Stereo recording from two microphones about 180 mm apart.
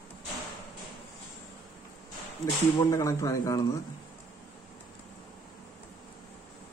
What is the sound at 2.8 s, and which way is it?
Speech, 20° left (ahead or behind).